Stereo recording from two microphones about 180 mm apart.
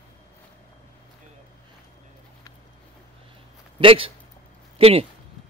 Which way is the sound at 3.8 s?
30° right (ahead or behind).